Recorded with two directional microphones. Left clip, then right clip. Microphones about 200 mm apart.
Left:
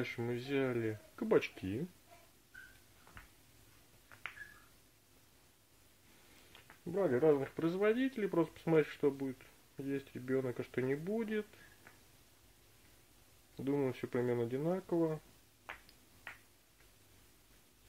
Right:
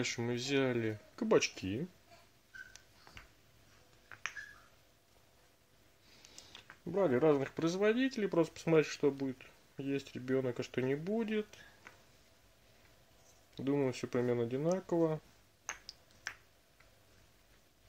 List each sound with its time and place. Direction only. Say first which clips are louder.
0.0 s speech: right 3 dB; 25° right (ahead or behind)
6.5 s speech: right 2 dB; 25° right (ahead or behind)
13.6 s speech: right 2 dB; 20° right (ahead or behind)